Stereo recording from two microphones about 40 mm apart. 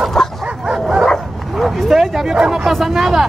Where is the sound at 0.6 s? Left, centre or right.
Centre.